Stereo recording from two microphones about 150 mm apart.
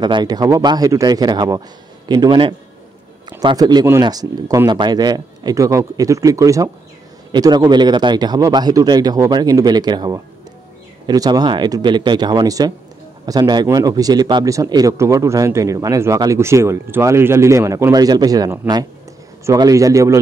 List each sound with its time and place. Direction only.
0.0 s a man's voice: 30° right (ahead or behind)